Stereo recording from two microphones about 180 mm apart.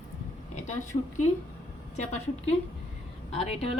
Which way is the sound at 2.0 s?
35° left (ahead or behind).